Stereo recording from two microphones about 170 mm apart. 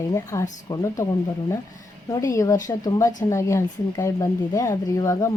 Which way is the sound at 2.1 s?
20° left (ahead or behind).